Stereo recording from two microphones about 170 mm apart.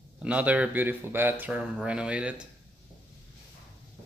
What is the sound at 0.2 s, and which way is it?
Speech, 10° right (ahead or behind).